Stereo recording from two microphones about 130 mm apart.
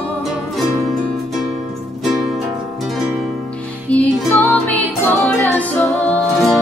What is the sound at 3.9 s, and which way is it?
Music, 10° left (ahead or behind).